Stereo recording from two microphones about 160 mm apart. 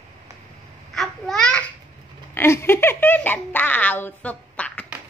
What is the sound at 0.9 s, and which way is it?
Babbling, 5° left (ahead or behind).